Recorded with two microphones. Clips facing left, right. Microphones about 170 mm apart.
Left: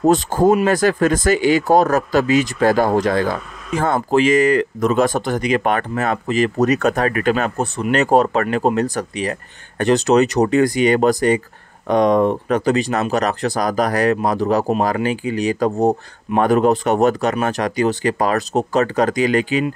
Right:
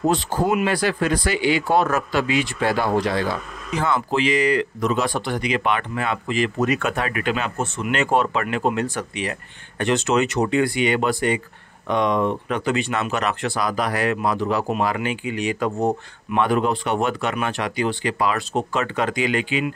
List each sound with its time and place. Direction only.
0.0 s speech: 45° left (ahead or behind)